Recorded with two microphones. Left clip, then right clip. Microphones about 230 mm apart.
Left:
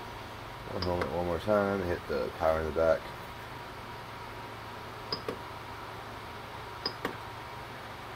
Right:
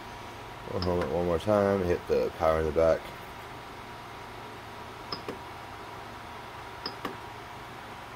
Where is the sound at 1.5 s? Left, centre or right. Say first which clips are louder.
Right 3 dB; right.